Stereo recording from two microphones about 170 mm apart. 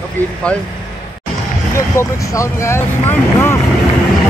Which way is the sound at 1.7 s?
15° left (ahead or behind).